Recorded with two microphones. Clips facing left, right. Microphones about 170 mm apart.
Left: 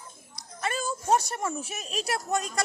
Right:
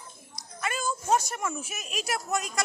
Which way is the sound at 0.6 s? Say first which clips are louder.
Left 1 dB; 35° left (ahead or behind).